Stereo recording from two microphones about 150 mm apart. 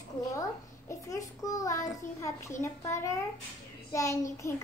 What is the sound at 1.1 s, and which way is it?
A woman's voice, 20° left (ahead or behind).